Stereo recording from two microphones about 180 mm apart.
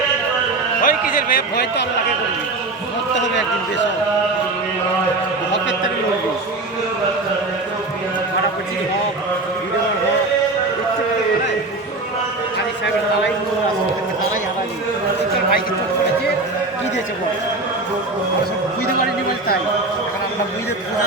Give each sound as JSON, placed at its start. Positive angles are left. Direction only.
{"t": 0.8, "sound": "a man's voice", "side_deg": 50}
{"t": 3.2, "sound": "a man's voice", "side_deg": 85}